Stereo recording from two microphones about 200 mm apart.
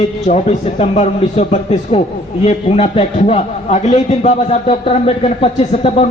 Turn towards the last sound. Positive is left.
turn(degrees=30)  # may be behind; listen again after turning